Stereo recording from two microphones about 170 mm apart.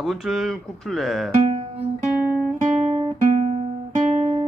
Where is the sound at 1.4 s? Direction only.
35° right (ahead or behind).